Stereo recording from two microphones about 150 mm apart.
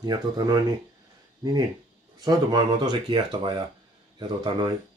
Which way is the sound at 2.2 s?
30° right (ahead or behind).